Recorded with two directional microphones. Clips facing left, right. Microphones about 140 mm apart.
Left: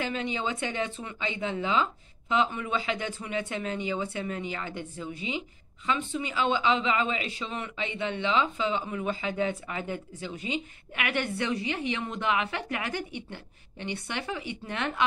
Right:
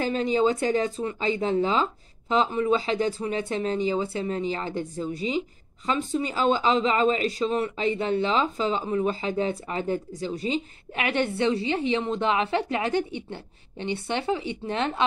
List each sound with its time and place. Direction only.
0.0 s speech: 40° right (ahead or behind)